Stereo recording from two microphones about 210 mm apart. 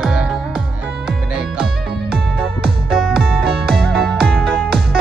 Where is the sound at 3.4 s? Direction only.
50° right (ahead or behind).